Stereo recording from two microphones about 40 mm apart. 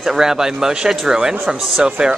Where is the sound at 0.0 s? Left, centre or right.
Centre.